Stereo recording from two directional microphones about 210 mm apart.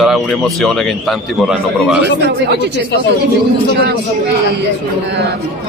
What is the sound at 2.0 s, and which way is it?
Speech, 50° right (ahead or behind).